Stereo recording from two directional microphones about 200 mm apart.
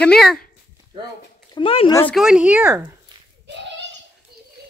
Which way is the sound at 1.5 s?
25° left (ahead or behind).